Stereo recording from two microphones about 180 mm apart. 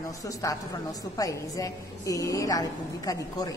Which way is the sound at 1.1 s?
20° left (ahead or behind).